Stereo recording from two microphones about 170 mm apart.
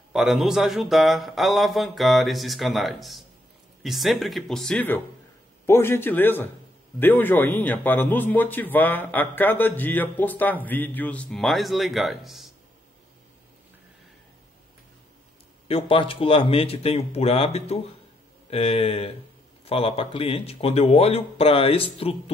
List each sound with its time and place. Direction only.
0.1 s a man's voice: centre (ahead or behind)
15.7 s speech: 30° left (ahead or behind)